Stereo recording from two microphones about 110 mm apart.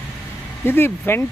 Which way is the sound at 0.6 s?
20° left (ahead or behind).